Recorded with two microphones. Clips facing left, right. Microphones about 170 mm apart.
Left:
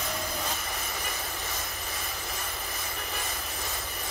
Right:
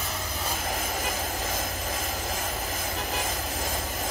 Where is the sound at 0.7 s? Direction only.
90° right.